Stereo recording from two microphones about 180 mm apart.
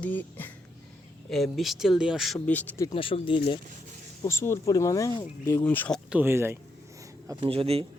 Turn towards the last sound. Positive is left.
turn(degrees=-35)  # may be behind; listen again after turning